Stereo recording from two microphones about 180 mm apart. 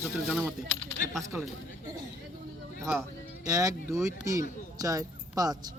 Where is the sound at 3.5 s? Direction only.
20° right (ahead or behind).